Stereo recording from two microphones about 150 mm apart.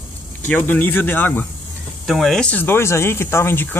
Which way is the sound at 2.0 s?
Centre (ahead or behind).